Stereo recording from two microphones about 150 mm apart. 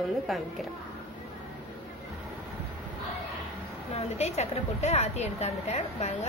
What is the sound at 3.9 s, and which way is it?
A woman's voice, 45° left (ahead or behind).